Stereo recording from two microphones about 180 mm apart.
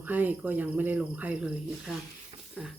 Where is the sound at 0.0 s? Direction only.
10° right (ahead or behind).